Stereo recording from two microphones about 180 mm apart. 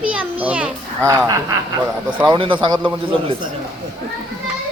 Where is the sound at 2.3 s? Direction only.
25° right (ahead or behind).